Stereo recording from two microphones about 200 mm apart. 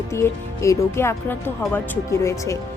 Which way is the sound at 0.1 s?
15° left (ahead or behind).